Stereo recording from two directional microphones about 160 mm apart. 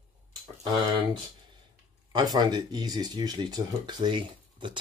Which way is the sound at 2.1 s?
25° right (ahead or behind).